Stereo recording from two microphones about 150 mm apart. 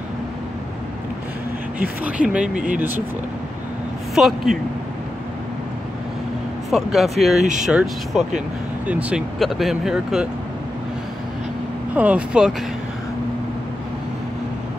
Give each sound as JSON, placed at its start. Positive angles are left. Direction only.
{"t": 1.8, "sound": "speech", "side_deg": -10}
{"t": 2.5, "sound": "speech", "side_deg": -60}
{"t": 4.1, "sound": "speech", "side_deg": 0}
{"t": 6.7, "sound": "speech", "side_deg": 0}
{"t": 11.9, "sound": "speech", "side_deg": -10}